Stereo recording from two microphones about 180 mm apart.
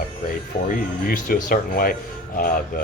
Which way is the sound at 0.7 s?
50° left (ahead or behind).